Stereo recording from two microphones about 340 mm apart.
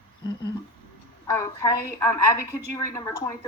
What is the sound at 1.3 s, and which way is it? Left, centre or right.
A woman's voice, centre.